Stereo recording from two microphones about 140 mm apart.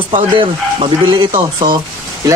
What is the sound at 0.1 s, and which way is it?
Speech, 40° right (ahead or behind).